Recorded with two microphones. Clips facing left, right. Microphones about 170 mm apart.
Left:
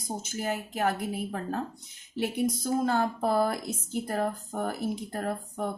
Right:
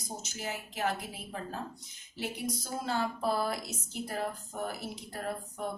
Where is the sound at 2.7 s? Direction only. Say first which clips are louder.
Left 5 dB; 50° left (ahead or behind).